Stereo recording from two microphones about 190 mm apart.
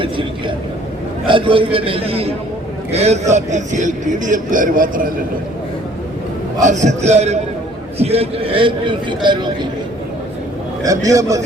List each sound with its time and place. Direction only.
0.0 s a sound: 25° right (ahead or behind)
1.3 s a man's voice: 25° right (ahead or behind); by 5.1 s 45° right (ahead or behind)
6.6 s a man's voice: 40° right (ahead or behind); by 9.5 s 25° right (ahead or behind)
10.8 s a man's voice: 15° right (ahead or behind)